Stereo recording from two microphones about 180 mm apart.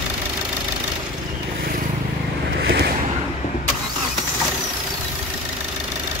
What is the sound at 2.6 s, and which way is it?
Vehicle, 65° right (ahead or behind).